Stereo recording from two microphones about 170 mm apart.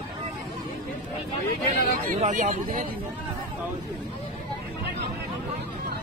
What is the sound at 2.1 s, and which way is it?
Speech, 50° right (ahead or behind).